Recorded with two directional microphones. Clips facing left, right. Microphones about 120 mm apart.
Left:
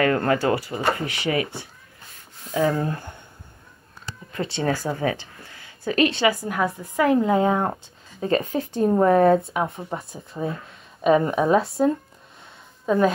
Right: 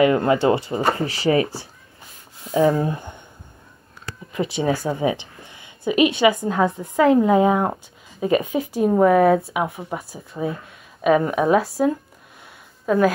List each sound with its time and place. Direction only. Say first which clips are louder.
0.0 s speech: right 4 dB; 15° right (ahead or behind); by 1.7 s 30° right (ahead or behind)
2.5 s speech: right 4 dB; 20° right (ahead or behind)
4.3 s a woman's voice: right 3 dB; 15° right (ahead or behind)